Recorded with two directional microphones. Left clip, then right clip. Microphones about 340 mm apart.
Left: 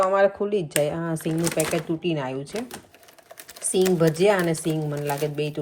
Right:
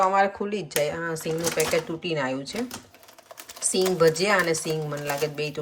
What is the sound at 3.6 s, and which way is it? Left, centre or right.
Speech, centre.